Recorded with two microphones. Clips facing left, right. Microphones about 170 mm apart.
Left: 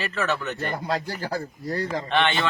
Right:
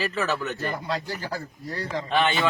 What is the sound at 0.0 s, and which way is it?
Speech, centre (ahead or behind).